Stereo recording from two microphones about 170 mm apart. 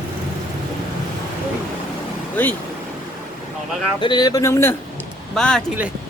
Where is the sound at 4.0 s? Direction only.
25° left (ahead or behind).